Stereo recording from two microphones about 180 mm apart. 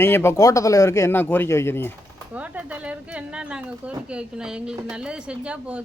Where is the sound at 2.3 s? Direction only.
10° right (ahead or behind).